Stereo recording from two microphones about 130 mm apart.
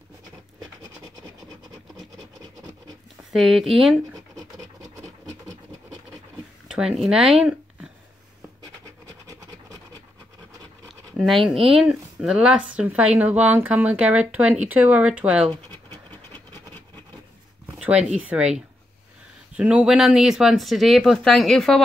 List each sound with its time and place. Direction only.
3.3 s speech: centre (ahead or behind)
4.1 s scratch: 25° right (ahead or behind)
6.7 s speech: 5° right (ahead or behind)
9.0 s scratch: 30° right (ahead or behind)
11.4 s speech: 5° right (ahead or behind)
17.6 s speech: 10° right (ahead or behind)